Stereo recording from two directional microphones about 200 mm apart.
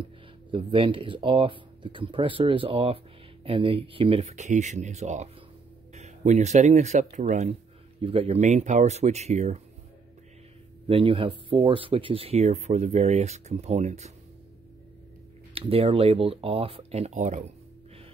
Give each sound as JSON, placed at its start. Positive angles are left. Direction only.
{"t": 0.0, "sound": "speech", "side_deg": -25}
{"t": 10.9, "sound": "speech", "side_deg": -25}
{"t": 15.5, "sound": "speech", "side_deg": -30}